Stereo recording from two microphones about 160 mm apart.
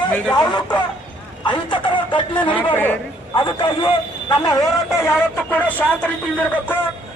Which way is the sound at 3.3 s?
30° left (ahead or behind).